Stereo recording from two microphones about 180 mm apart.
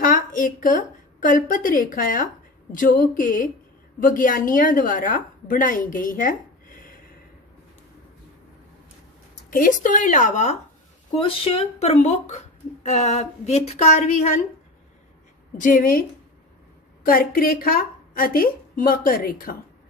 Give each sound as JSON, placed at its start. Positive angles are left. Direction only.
{"t": 0.0, "sound": "a woman's voice", "side_deg": 50}
{"t": 9.5, "sound": "a woman's voice", "side_deg": 50}
{"t": 11.1, "sound": "a woman's voice", "side_deg": 30}
{"t": 15.6, "sound": "a woman's voice", "side_deg": 50}
{"t": 17.0, "sound": "a woman's voice", "side_deg": 55}